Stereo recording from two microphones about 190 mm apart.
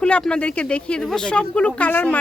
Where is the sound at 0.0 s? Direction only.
5° left (ahead or behind).